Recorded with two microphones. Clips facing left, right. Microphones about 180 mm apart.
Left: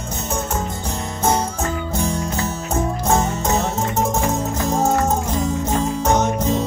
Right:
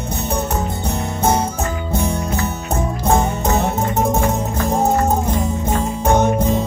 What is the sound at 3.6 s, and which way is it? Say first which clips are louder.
Music: right 2 dB; 60° right (ahead or behind).